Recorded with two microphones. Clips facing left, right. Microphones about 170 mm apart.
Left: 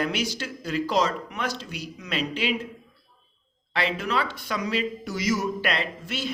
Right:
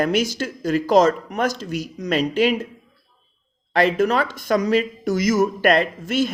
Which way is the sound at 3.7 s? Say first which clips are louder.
Right 9 dB; 45° right (ahead or behind).